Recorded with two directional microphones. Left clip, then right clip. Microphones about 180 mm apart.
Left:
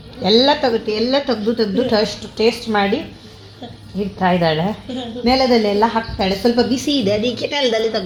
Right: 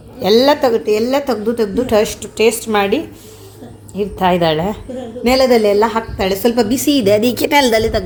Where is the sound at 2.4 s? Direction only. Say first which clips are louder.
Right 2 dB; 35° right (ahead or behind).